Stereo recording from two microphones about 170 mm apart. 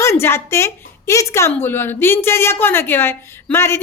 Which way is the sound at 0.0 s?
15° left (ahead or behind).